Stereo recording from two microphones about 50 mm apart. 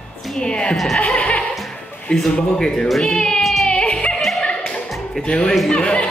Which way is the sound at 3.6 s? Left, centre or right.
Centre.